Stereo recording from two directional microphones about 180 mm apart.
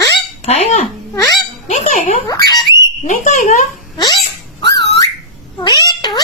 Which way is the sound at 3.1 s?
45° left (ahead or behind).